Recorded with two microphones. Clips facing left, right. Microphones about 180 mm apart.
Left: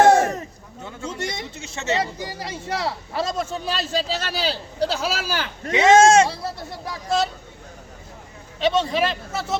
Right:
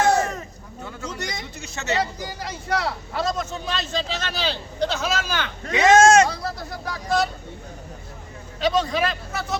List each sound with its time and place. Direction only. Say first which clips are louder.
0.9 s a man's voice: left 3 dB; 25° left (ahead or behind)
8.6 s speech: left 1 dB; 25° left (ahead or behind)